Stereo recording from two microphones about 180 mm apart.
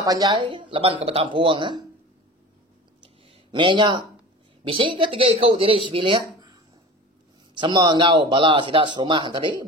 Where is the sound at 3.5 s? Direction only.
25° right (ahead or behind).